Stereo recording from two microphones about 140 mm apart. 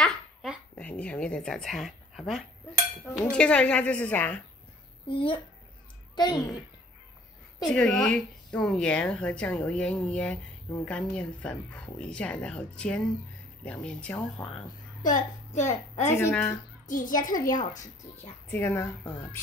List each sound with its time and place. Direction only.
0.7 s speech: 10° left (ahead or behind)
5.0 s a child's voice: 40° left (ahead or behind)
7.6 s speech: 5° left (ahead or behind)
15.0 s a woman's voice: 60° left (ahead or behind)
16.1 s speech: 15° left (ahead or behind)
16.8 s a child's voice: 70° left (ahead or behind)
18.5 s speech: 15° left (ahead or behind)